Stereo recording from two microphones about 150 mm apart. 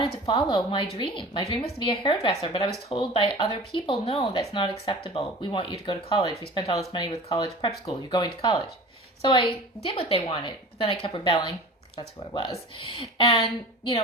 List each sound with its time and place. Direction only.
0.3 s a woman's voice: 25° left (ahead or behind)